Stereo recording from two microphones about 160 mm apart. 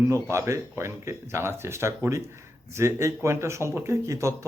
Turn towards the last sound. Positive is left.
turn(degrees=-20)  # may be behind; listen again after turning